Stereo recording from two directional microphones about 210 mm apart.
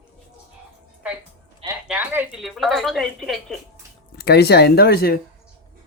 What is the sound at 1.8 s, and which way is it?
Speech, 10° right (ahead or behind).